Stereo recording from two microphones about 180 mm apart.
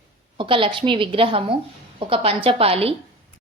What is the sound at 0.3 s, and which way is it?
A woman's voice, 30° right (ahead or behind).